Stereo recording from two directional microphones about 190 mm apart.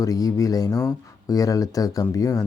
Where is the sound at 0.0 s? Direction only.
20° left (ahead or behind).